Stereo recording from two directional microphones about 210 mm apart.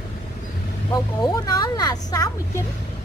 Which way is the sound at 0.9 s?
20° left (ahead or behind).